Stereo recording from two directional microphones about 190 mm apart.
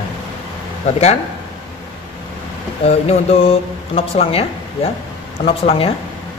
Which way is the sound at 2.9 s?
30° left (ahead or behind).